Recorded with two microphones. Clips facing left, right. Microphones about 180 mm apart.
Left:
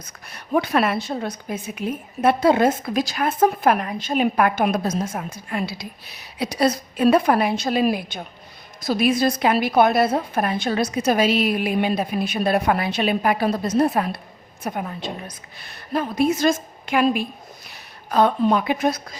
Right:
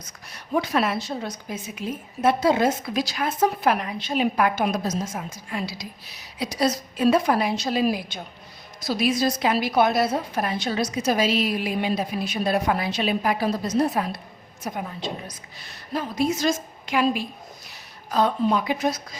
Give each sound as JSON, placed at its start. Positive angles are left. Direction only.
{"t": 0.0, "sound": "a woman's voice", "side_deg": 60}